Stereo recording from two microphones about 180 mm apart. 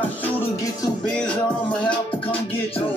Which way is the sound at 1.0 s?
5° left (ahead or behind).